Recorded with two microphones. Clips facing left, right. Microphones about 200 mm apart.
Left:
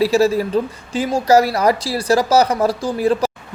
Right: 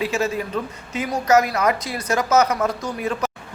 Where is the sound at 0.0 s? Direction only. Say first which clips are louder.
Left 8 dB; 35° left (ahead or behind).